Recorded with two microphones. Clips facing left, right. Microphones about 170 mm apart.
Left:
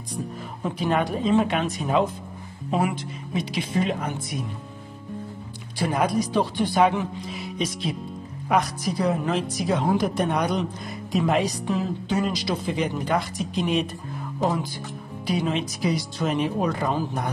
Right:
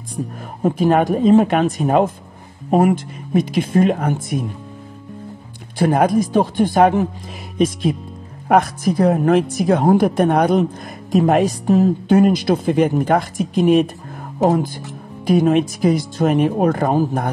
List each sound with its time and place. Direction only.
0.1 s speech: 45° right (ahead or behind)
5.8 s speech: 50° right (ahead or behind)